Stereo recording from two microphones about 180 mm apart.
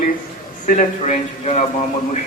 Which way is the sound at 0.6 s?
45° left (ahead or behind).